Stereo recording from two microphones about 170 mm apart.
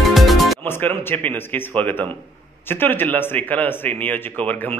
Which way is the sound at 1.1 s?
10° left (ahead or behind).